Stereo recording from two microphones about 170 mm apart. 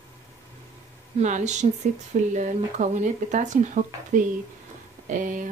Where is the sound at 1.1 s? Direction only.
45° right (ahead or behind).